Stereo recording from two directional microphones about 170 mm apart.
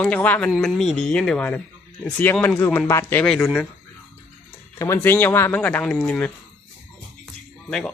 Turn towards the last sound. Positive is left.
turn(degrees=0)  # may be behind; listen again after turning